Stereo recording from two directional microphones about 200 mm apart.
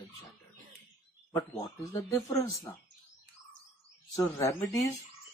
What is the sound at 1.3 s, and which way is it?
Speech, 15° left (ahead or behind).